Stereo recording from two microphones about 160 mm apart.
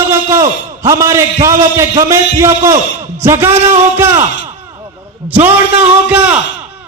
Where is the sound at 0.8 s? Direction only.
15° right (ahead or behind).